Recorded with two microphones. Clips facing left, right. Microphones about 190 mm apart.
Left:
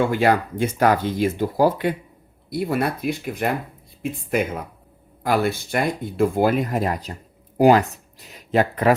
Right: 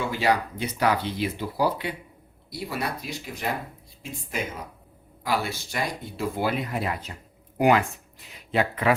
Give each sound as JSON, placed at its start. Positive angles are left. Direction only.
{"t": 0.0, "sound": "speech", "side_deg": 55}